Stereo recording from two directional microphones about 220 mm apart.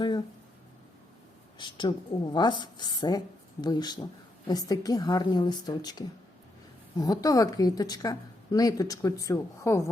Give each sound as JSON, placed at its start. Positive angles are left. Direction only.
{"t": 0.0, "sound": "speech", "side_deg": 20}
{"t": 1.5, "sound": "a woman's voice", "side_deg": 20}